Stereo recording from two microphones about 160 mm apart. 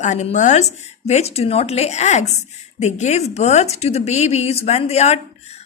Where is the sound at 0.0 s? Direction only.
45° left (ahead or behind).